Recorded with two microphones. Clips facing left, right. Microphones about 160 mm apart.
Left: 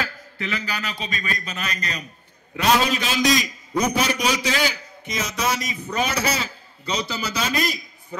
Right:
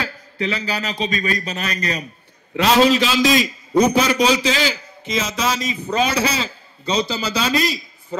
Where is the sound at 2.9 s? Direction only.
50° left (ahead or behind).